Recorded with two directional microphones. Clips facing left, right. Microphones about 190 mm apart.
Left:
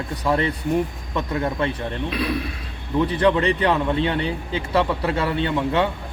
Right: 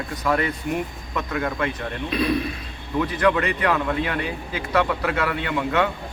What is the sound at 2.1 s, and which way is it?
Speech, 5° left (ahead or behind).